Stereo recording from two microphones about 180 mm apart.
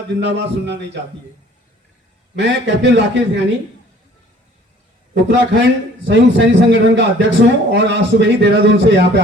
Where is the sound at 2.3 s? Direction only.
80° right.